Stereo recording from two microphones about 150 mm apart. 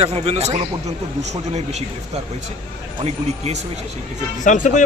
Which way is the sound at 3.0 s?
45° right (ahead or behind).